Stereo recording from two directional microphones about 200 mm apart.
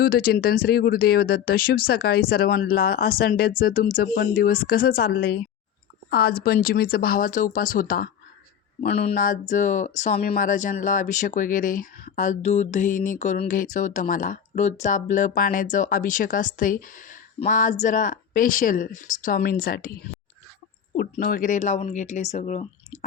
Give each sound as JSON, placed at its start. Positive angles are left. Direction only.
{"t": 0.0, "sound": "speech", "side_deg": 50}
{"t": 9.0, "sound": "speech", "side_deg": 40}